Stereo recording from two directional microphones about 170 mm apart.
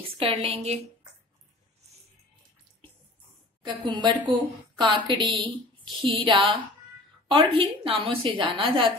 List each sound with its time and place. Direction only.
0.2 s a woman's voice: 35° right (ahead or behind)
3.6 s a woman's voice: 25° right (ahead or behind)